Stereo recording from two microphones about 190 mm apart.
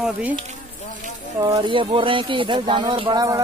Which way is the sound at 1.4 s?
20° right (ahead or behind).